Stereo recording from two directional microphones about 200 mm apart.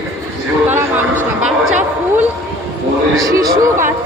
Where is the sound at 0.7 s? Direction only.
10° right (ahead or behind).